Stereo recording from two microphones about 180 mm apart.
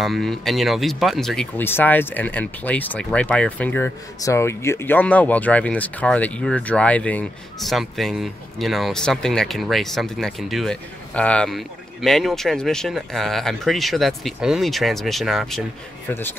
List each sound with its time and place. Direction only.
0.0 s speech: centre (ahead or behind)
16.1 s a man's voice: 10° left (ahead or behind)